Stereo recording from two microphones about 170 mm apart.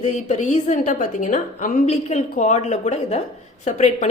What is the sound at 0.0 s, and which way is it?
A woman's voice, 40° left (ahead or behind).